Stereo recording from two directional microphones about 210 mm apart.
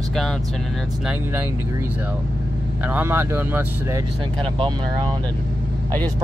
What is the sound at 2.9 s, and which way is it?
Speech, 10° right (ahead or behind).